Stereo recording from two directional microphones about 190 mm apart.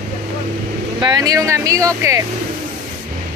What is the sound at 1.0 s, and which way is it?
Speech, 20° right (ahead or behind).